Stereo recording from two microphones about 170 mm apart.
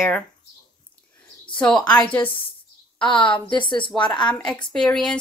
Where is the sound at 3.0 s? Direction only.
30° left (ahead or behind).